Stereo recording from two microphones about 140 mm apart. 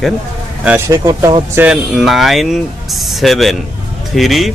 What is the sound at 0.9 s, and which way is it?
Speech, 25° right (ahead or behind).